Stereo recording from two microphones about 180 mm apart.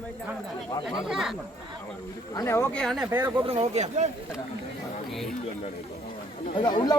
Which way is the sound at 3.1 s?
10° right (ahead or behind).